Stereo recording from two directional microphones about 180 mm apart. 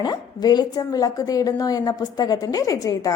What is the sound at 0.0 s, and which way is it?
A woman's voice, 20° left (ahead or behind).